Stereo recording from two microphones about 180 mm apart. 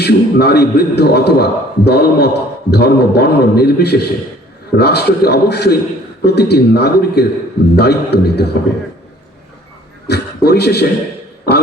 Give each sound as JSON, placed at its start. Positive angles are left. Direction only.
{"t": 0.0, "sound": "a man's voice", "side_deg": 65}
{"t": 10.1, "sound": "a man's voice", "side_deg": 65}